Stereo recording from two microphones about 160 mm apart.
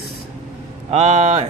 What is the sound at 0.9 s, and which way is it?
Speech, 45° right (ahead or behind).